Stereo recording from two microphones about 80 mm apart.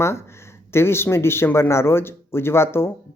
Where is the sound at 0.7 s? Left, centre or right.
Left.